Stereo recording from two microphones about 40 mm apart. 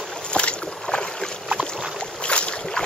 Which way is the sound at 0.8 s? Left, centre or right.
Centre.